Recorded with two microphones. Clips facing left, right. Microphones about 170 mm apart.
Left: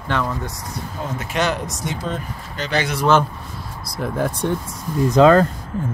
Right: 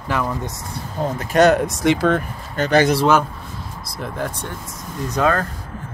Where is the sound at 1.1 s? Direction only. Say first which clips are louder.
Right 8 dB; 45° right (ahead or behind).